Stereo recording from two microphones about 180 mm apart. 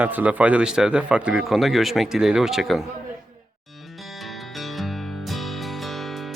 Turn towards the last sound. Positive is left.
turn(degrees=0)  # may be behind; listen again after turning